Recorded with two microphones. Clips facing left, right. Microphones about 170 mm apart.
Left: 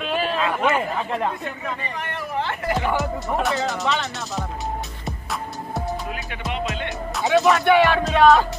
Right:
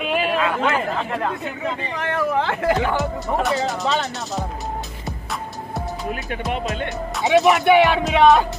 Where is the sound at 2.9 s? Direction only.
Centre (ahead or behind).